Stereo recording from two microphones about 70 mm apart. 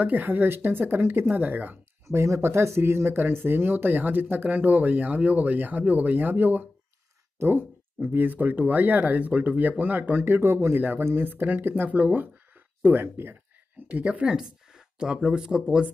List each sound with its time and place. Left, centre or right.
0.0 s speech: right
2.0 s speech: right
13.8 s speech: centre